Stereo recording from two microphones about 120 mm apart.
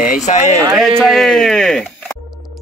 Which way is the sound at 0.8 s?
Centre (ahead or behind).